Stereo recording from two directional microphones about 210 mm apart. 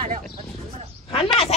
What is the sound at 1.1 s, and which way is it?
Speech, 30° left (ahead or behind).